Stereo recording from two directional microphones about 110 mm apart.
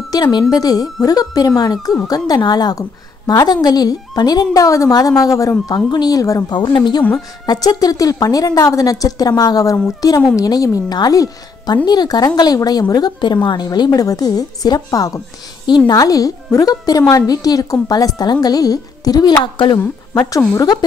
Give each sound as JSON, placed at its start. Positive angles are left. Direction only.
{"t": 0.1, "sound": "a woman's voice", "side_deg": 40}
{"t": 19.4, "sound": "speech", "side_deg": 45}
{"t": 19.8, "sound": "a woman's voice", "side_deg": 30}